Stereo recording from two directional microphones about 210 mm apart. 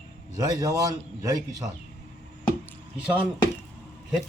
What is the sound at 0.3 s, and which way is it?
Speech, 20° right (ahead or behind).